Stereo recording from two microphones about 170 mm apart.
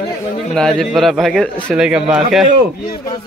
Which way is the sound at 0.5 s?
5° left (ahead or behind).